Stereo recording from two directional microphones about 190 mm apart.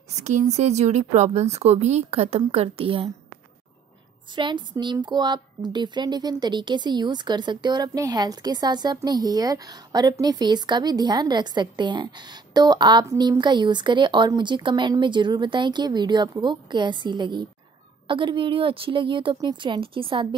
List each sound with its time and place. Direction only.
0.1 s speech: 35° right (ahead or behind)
4.4 s a woman's voice: 25° right (ahead or behind)